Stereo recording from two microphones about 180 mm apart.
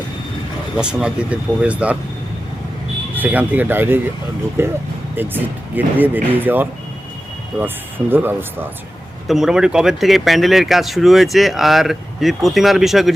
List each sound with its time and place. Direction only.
0.8 s speech: 5° right (ahead or behind)
3.2 s speech: 10° right (ahead or behind)
8.1 s speech: 10° right (ahead or behind)